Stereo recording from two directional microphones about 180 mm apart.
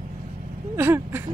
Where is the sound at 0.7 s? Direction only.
15° right (ahead or behind).